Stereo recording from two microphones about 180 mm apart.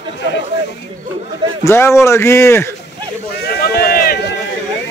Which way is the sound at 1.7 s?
15° left (ahead or behind).